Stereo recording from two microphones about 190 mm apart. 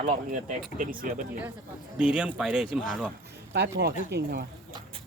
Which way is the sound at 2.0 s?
5° right (ahead or behind).